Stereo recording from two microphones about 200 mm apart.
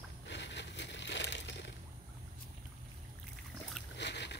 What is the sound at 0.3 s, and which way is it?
Crushing, 60° left (ahead or behind).